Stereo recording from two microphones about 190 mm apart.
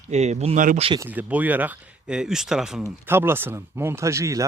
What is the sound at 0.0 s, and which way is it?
Speech, 35° right (ahead or behind).